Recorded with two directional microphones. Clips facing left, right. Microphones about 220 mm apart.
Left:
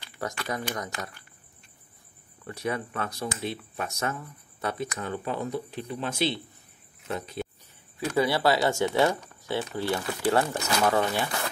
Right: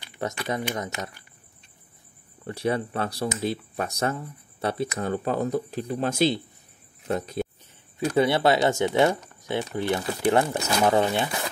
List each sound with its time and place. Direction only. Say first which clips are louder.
0.0 s speech: right 3 dB; 20° right (ahead or behind)
2.4 s speech: right 5 dB; 30° right (ahead or behind)
8.2 s speech: right 3 dB; 20° right (ahead or behind)